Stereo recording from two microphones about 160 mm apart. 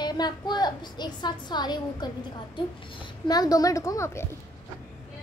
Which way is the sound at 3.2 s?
25° left (ahead or behind).